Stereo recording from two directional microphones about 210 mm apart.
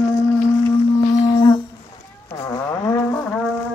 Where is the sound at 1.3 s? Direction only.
20° left (ahead or behind).